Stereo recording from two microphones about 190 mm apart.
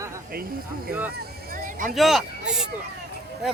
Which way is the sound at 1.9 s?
Centre (ahead or behind).